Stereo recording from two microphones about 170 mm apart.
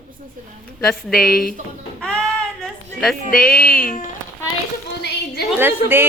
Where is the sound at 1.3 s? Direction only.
60° left (ahead or behind).